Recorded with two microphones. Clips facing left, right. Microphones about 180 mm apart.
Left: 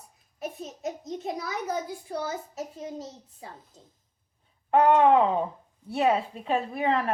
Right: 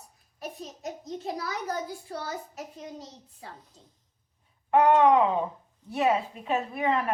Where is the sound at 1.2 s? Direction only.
20° left (ahead or behind).